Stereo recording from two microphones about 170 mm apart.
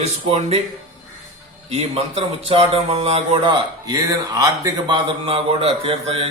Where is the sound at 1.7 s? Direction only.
35° right (ahead or behind).